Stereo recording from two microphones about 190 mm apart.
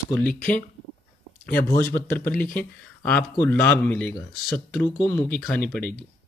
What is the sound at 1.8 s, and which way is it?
Speech, 15° left (ahead or behind).